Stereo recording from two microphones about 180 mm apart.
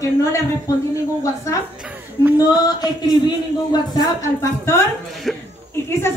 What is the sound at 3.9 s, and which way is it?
Speech, 20° left (ahead or behind).